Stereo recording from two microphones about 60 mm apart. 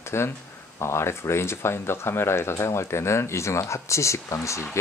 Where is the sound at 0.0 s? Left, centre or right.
Left.